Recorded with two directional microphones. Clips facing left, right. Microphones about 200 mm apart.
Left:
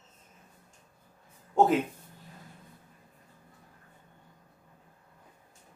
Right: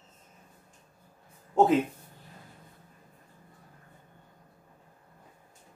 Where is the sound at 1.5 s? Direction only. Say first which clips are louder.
Right 1 dB; centre (ahead or behind).